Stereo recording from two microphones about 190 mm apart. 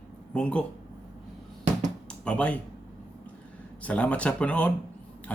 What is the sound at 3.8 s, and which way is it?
Speech, 5° left (ahead or behind).